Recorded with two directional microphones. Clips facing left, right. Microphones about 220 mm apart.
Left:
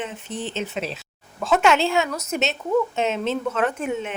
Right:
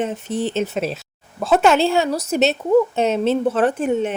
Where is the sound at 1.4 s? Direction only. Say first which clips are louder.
Right 4 dB; 35° right (ahead or behind).